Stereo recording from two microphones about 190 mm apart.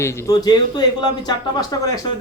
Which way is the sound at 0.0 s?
15° left (ahead or behind).